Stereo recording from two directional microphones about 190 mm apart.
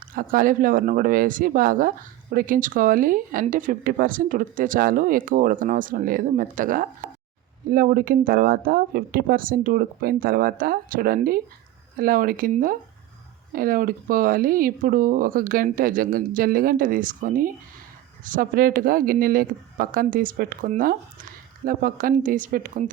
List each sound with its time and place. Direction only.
0.2 s speech: 45° right (ahead or behind)